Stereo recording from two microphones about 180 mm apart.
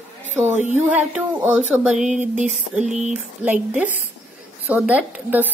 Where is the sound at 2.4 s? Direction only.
5° right (ahead or behind).